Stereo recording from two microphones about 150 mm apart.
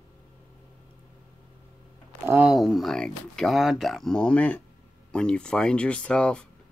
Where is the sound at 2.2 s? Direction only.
15° right (ahead or behind).